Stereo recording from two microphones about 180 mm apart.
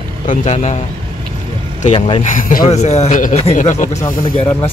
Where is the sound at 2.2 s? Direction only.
45° left (ahead or behind).